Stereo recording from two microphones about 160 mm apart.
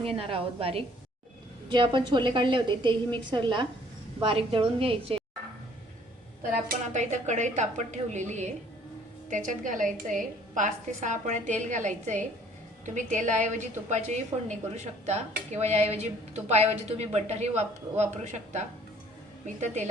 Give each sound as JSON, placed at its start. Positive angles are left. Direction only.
{"t": 0.0, "sound": "a woman's voice", "side_deg": -35}
{"t": 6.8, "sound": "a woman's voice", "side_deg": -50}